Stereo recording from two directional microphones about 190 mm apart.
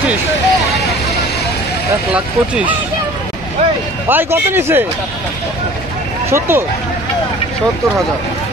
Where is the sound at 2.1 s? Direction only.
5° right (ahead or behind).